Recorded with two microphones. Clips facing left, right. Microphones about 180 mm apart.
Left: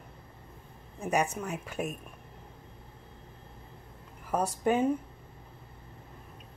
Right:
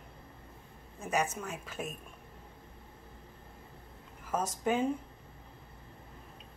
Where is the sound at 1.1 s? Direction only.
15° left (ahead or behind).